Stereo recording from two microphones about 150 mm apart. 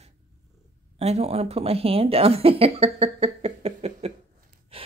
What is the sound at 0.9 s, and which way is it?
Speech, 45° right (ahead or behind).